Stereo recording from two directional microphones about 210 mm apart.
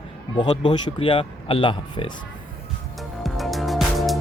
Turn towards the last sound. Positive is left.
turn(degrees=0)  # may be behind; listen again after turning